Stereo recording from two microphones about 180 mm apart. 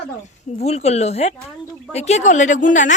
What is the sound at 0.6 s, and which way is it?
A woman's voice, 35° left (ahead or behind).